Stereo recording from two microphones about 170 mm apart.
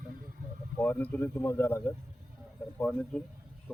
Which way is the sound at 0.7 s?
10° left (ahead or behind).